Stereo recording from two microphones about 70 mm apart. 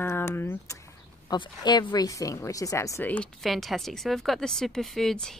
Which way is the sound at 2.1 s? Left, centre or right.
Left.